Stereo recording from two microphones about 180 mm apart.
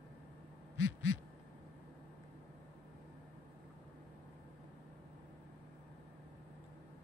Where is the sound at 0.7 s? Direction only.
90° left.